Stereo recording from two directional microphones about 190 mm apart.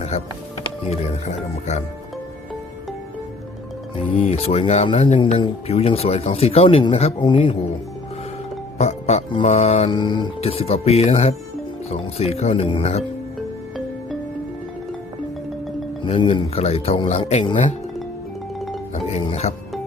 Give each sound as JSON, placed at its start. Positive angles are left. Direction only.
{"t": 0.1, "sound": "speech", "side_deg": 35}
{"t": 3.9, "sound": "speech", "side_deg": 30}
{"t": 8.8, "sound": "speech", "side_deg": 35}
{"t": 16.0, "sound": "speech", "side_deg": 30}
{"t": 18.9, "sound": "music", "side_deg": 35}